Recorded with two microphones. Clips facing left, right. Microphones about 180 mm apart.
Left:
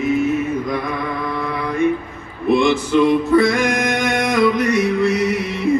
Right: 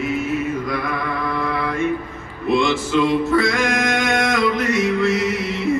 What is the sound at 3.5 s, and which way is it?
Music, 15° left (ahead or behind).